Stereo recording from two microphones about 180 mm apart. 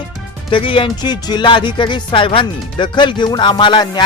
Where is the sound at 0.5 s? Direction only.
30° left (ahead or behind).